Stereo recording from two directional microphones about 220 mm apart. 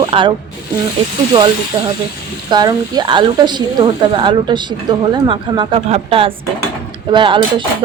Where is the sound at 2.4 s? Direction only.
20° right (ahead or behind).